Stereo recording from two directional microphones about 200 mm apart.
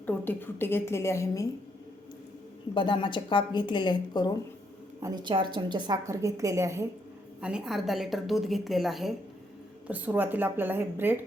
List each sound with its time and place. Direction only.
0.0 s a woman's voice: 10° left (ahead or behind)
2.7 s a woman's voice: 25° left (ahead or behind)
5.0 s a woman's voice: 20° right (ahead or behind)
7.4 s a woman's voice: 5° right (ahead or behind)